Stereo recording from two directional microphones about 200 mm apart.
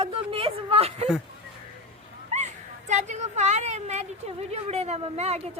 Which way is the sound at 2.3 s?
35° right (ahead or behind).